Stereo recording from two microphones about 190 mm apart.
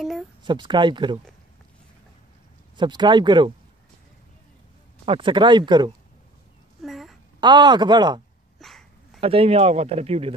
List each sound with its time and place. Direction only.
0.4 s speech: 25° right (ahead or behind)
2.8 s speech: 25° right (ahead or behind)
5.0 s speech: 25° right (ahead or behind)
6.8 s a sound: centre (ahead or behind)
7.3 s speech: 25° right (ahead or behind)
8.5 s dog: centre (ahead or behind)
9.2 s speech: 30° right (ahead or behind)